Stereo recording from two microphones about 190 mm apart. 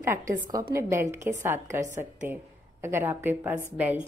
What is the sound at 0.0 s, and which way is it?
A woman's voice, 15° right (ahead or behind).